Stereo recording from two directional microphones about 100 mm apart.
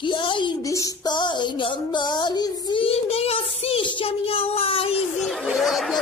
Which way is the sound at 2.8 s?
80° left.